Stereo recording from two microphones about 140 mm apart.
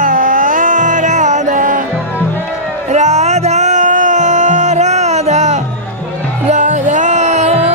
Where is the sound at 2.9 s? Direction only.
55° right (ahead or behind).